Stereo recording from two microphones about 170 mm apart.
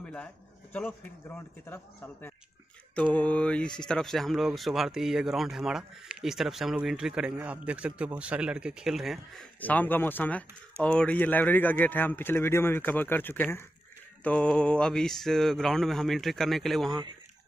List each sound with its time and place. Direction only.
0.0 s a sound: 5° left (ahead or behind)
0.7 s speech: 10° left (ahead or behind)
3.0 s speech: 10° left (ahead or behind)